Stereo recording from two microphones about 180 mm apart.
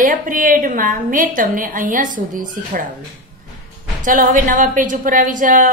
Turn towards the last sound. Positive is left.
turn(degrees=-45)  # may be behind; listen again after turning